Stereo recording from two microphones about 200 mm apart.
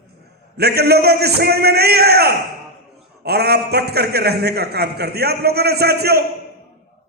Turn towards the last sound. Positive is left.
turn(degrees=-50)  # may be behind; listen again after turning